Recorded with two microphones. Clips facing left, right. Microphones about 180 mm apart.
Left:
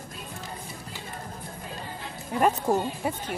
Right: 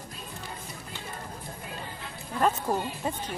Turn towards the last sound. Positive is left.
turn(degrees=15)  # may be behind; listen again after turning